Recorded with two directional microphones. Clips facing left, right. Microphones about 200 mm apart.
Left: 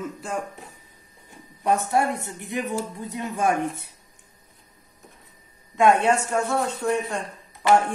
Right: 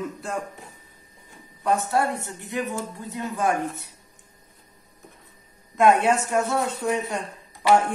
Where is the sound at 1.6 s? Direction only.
15° left (ahead or behind).